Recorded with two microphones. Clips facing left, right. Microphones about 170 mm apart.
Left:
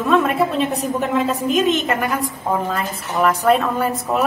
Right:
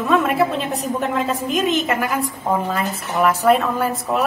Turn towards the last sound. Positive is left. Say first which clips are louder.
# left 1 dB
turn(degrees=0)  # may be behind; listen again after turning